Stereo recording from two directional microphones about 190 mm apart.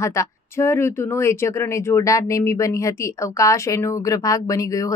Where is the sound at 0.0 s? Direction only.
15° left (ahead or behind).